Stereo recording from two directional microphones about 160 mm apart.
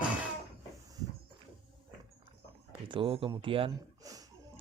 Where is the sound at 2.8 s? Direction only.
30° right (ahead or behind).